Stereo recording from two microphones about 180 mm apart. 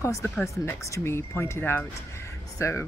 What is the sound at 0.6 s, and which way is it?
Speech, 15° left (ahead or behind).